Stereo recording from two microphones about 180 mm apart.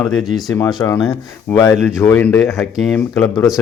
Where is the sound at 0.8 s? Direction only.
15° left (ahead or behind).